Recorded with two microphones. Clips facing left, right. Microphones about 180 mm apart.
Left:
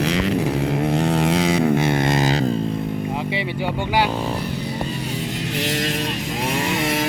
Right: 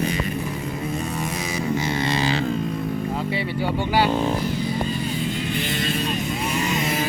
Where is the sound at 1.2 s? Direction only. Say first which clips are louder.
Left 9 dB; 65° left (ahead or behind); by 2.4 s 45° left (ahead or behind).